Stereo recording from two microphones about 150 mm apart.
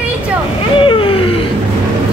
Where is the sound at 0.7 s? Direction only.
35° left (ahead or behind).